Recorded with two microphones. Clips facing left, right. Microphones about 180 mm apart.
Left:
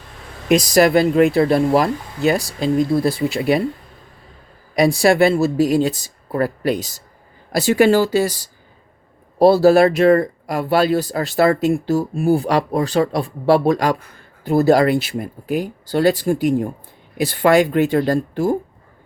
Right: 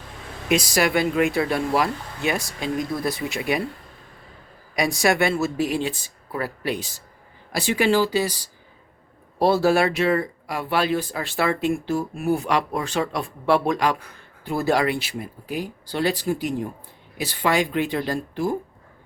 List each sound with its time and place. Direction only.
0.4 s speech: 40° left (ahead or behind)
4.7 s speech: 35° left (ahead or behind)
9.4 s speech: 35° left (ahead or behind)